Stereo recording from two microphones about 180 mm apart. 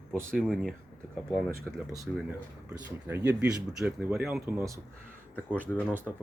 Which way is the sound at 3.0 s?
10° right (ahead or behind).